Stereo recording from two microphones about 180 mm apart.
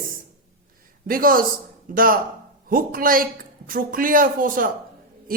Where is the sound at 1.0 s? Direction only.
50° right (ahead or behind).